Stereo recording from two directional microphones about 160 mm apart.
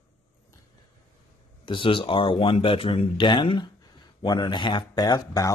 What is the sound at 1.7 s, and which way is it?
Speech, 30° left (ahead or behind).